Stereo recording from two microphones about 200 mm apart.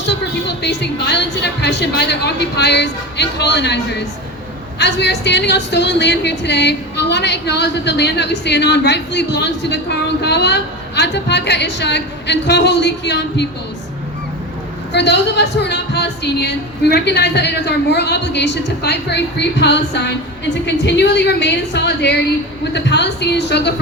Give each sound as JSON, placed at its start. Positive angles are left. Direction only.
{"t": 0.1, "sound": "a woman's voice", "side_deg": 60}
{"t": 14.9, "sound": "a woman's voice", "side_deg": 60}